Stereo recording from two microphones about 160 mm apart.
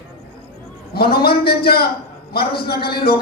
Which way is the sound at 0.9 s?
75° left (ahead or behind).